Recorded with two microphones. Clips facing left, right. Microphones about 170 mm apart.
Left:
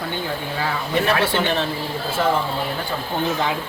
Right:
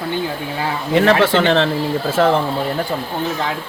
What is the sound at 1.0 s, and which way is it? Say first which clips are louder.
Speech: right 7 dB; 90° right.